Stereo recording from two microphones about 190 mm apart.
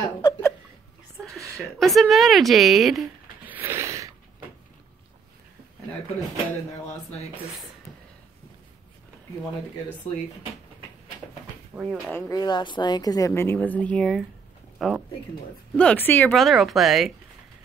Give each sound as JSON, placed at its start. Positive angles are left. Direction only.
{"t": 0.2, "sound": "a sound", "side_deg": 15}
{"t": 1.6, "sound": "speech", "side_deg": 0}
{"t": 11.7, "sound": "speech", "side_deg": -5}
{"t": 12.1, "sound": "a woman's voice", "side_deg": 10}
{"t": 12.4, "sound": "a woman's voice", "side_deg": 25}